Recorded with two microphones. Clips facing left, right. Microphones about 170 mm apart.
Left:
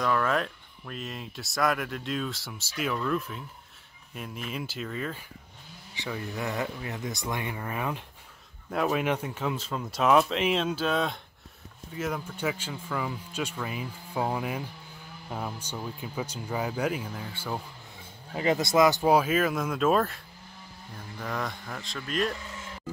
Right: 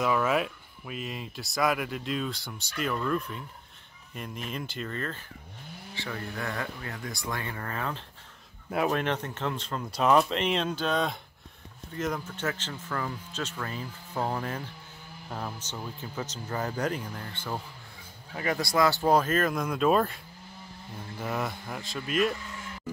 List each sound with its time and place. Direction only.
0.0 s speech: 5° right (ahead or behind); by 8.0 s 15° left (ahead or behind)
8.6 s speech: 5° right (ahead or behind)
8.9 s speech: 10° left (ahead or behind)
18.3 s speech: 20° left (ahead or behind); by 20.2 s centre (ahead or behind)
21.2 s speech: 5° right (ahead or behind)